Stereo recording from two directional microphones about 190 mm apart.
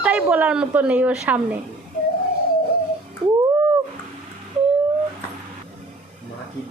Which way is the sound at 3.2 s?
30° right (ahead or behind).